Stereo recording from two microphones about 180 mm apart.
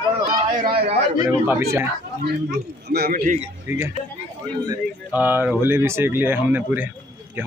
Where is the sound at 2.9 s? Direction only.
55° right (ahead or behind).